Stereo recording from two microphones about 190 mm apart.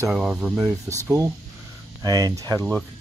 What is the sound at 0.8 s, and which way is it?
Speech, 15° right (ahead or behind).